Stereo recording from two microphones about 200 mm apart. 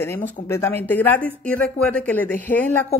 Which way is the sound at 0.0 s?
10° left (ahead or behind).